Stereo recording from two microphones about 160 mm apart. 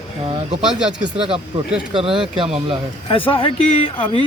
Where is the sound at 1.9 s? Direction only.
35° right (ahead or behind).